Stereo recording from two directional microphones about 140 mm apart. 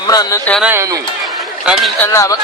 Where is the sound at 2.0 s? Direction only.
20° left (ahead or behind).